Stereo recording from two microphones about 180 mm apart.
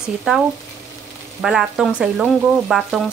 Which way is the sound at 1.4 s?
5° right (ahead or behind).